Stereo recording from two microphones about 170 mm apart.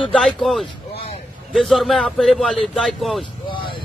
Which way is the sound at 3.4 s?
30° left (ahead or behind).